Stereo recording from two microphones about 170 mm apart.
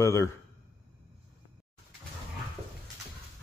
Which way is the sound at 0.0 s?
15° left (ahead or behind).